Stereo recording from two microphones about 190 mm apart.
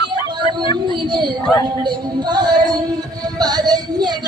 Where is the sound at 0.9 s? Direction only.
25° right (ahead or behind).